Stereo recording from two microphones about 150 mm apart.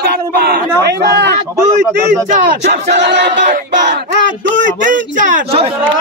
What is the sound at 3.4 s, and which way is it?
Speech, 55° right (ahead or behind).